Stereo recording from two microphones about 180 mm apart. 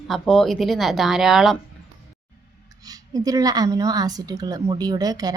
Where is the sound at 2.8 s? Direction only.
20° right (ahead or behind).